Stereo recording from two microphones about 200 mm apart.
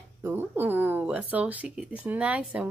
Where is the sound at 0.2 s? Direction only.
10° right (ahead or behind).